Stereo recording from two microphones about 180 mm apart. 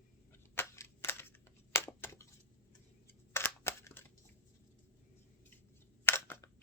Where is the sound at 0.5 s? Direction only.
10° left (ahead or behind).